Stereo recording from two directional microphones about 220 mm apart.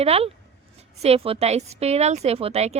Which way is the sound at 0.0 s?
25° right (ahead or behind).